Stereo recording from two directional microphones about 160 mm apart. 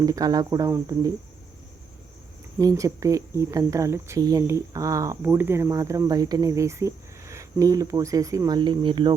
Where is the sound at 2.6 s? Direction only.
20° right (ahead or behind).